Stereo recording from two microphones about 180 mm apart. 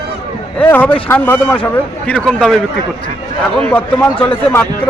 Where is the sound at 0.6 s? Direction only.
10° left (ahead or behind).